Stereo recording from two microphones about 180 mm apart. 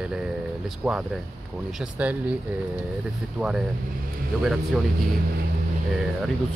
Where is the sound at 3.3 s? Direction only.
5° right (ahead or behind).